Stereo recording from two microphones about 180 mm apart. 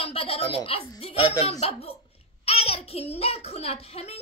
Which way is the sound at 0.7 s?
30° left (ahead or behind).